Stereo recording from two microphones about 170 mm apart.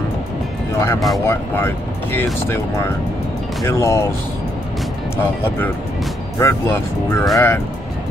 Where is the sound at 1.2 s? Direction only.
15° left (ahead or behind).